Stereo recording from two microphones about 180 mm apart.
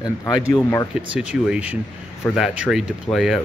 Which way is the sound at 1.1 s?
5° right (ahead or behind).